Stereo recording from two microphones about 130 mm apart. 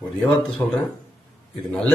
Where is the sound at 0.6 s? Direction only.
20° left (ahead or behind).